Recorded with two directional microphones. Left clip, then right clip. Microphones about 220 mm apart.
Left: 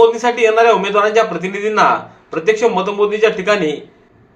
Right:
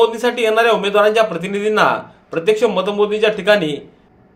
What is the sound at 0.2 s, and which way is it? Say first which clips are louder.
A man's voice: left 3 dB; 45° right (ahead or behind).